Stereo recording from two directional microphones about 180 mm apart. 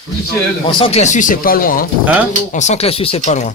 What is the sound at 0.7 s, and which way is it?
Speech, 30° left (ahead or behind).